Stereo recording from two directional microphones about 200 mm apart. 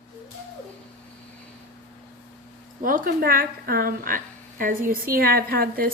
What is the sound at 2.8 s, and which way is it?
A woman's voice, 40° right (ahead or behind).